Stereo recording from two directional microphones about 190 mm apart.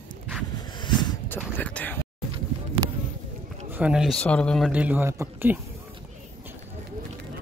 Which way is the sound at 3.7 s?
5° right (ahead or behind).